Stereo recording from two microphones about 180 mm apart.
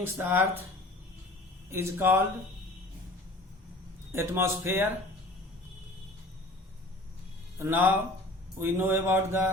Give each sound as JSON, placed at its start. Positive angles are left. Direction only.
{"t": 0.0, "sound": "speech", "side_deg": -10}
{"t": 1.7, "sound": "speech", "side_deg": -15}
{"t": 4.1, "sound": "speech", "side_deg": -15}
{"t": 7.6, "sound": "speech", "side_deg": -10}